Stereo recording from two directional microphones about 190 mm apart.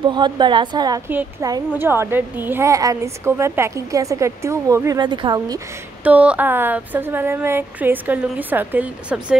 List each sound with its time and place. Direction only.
0.1 s a woman's voice: 25° right (ahead or behind)
6.0 s a woman's voice: 10° right (ahead or behind)